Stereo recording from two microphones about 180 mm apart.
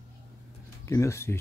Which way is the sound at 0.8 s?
15° left (ahead or behind).